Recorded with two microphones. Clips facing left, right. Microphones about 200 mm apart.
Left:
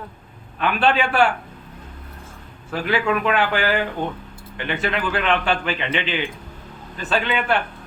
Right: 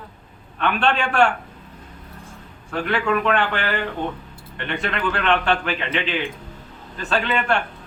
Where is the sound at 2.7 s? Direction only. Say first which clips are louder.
Even; 5° left (ahead or behind).